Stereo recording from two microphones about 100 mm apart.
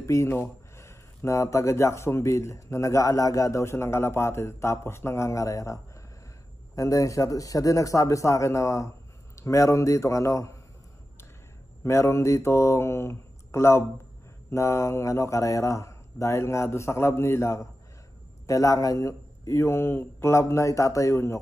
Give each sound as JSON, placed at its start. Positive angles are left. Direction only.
{"t": 0.0, "sound": "a man's voice", "side_deg": 30}
{"t": 11.8, "sound": "a man's voice", "side_deg": 30}